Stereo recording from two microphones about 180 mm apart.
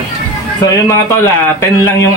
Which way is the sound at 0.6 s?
15° left (ahead or behind).